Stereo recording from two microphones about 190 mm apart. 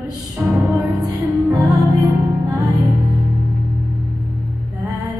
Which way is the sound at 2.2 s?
15° right (ahead or behind).